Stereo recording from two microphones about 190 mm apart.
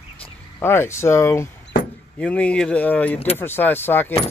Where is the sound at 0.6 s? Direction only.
15° left (ahead or behind).